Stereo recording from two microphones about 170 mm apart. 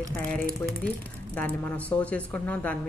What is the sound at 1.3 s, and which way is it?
Speech, 10° left (ahead or behind).